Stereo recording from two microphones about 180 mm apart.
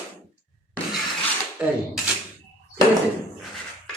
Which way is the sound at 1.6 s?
5° right (ahead or behind).